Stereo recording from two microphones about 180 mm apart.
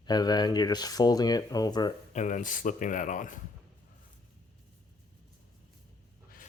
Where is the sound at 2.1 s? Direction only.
45° left (ahead or behind).